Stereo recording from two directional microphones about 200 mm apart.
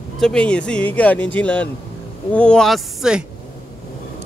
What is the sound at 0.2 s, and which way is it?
Speech, 5° left (ahead or behind).